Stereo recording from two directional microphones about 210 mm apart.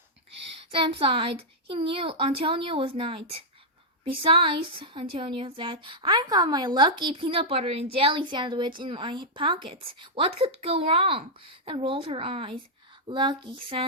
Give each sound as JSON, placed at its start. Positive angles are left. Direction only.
{"t": 0.7, "sound": "a woman's voice", "side_deg": -25}